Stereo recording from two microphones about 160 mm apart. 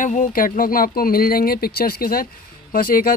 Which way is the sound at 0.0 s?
55° left (ahead or behind).